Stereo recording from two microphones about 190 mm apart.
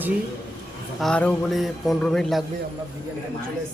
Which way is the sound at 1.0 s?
5° left (ahead or behind).